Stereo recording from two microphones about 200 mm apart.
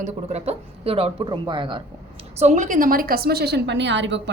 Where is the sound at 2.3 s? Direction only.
35° right (ahead or behind).